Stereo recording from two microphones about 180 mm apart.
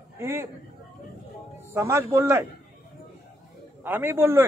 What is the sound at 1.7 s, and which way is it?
Speech, 15° right (ahead or behind).